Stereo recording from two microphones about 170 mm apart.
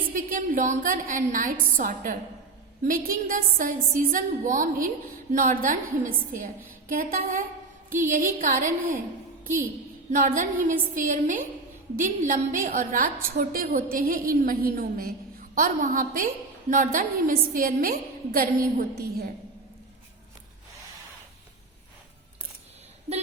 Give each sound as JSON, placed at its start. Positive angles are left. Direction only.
{"t": 0.1, "sound": "a woman's voice", "side_deg": -50}
{"t": 10.1, "sound": "a woman's voice", "side_deg": -50}
{"t": 15.5, "sound": "a woman's voice", "side_deg": -50}